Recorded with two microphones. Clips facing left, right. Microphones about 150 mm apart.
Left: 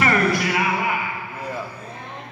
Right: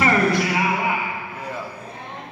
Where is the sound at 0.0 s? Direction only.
25° right (ahead or behind).